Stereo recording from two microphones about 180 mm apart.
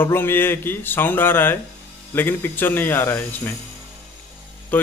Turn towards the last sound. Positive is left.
turn(degrees=10)  # may be behind; listen again after turning